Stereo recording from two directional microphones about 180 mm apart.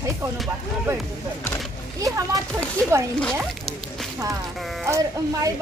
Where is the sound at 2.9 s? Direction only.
15° right (ahead or behind).